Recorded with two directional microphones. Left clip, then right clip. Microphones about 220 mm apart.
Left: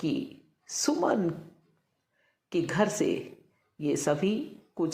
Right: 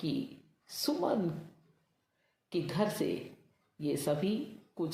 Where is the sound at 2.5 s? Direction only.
20° left (ahead or behind).